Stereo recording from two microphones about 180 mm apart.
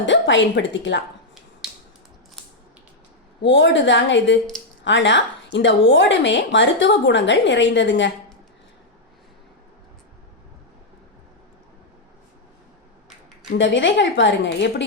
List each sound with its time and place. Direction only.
0.0 s a woman's voice: 90° left
3.4 s a woman's voice: 80° left
13.6 s a woman's voice: 90° left